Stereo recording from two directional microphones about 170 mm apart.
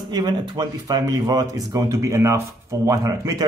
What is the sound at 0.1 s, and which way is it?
Speech, 25° right (ahead or behind).